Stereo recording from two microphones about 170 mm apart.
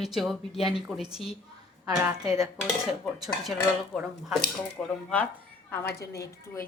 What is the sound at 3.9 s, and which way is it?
A woman's voice, centre (ahead or behind).